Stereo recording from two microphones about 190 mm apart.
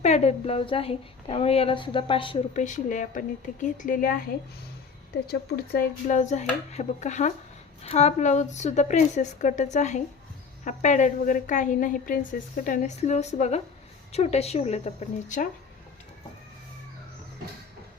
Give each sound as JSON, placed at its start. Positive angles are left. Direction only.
{"t": 0.0, "sound": "a woman's voice", "side_deg": 35}
{"t": 2.6, "sound": "speech", "side_deg": 40}
{"t": 5.3, "sound": "a woman's voice", "side_deg": 55}